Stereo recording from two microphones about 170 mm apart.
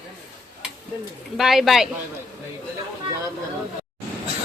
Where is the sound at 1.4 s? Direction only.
Centre (ahead or behind).